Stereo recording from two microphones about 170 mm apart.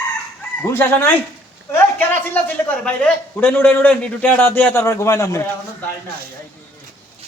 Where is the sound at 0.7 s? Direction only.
10° left (ahead or behind).